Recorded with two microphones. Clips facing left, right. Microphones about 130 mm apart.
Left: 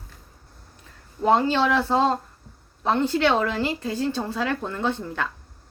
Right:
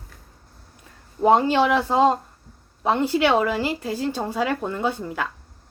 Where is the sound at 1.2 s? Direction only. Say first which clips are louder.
Right 3 dB; 15° right (ahead or behind).